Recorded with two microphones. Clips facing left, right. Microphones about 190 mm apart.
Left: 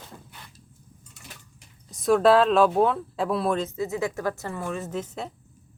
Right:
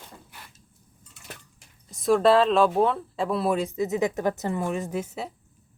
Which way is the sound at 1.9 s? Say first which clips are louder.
Left 1 dB; centre (ahead or behind).